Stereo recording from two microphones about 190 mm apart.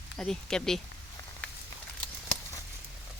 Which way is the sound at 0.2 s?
5° left (ahead or behind).